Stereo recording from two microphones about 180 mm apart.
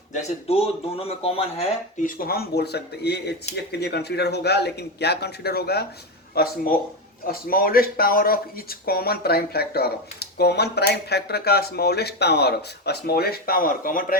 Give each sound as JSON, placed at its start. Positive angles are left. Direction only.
{"t": 0.1, "sound": "speech", "side_deg": 35}
{"t": 2.0, "sound": "speech", "side_deg": 50}